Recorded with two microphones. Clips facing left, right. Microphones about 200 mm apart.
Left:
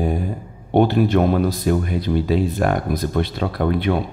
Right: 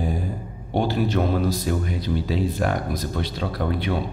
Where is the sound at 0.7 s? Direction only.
55° left (ahead or behind).